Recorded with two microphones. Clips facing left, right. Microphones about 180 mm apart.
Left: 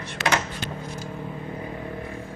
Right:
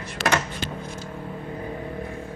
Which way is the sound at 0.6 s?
30° right (ahead or behind).